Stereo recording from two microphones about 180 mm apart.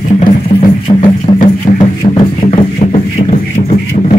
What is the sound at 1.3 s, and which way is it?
Music, 45° left (ahead or behind).